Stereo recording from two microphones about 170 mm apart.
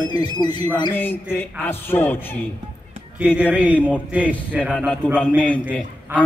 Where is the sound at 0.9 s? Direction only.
10° left (ahead or behind).